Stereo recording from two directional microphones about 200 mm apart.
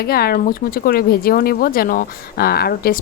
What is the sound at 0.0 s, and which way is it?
Speech, 50° left (ahead or behind).